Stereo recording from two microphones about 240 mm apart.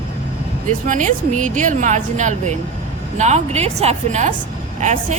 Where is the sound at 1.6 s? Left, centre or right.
Right.